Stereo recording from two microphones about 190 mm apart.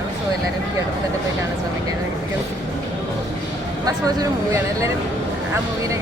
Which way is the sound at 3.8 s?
15° right (ahead or behind).